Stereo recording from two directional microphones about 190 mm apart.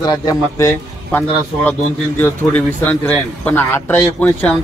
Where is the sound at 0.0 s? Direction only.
20° left (ahead or behind).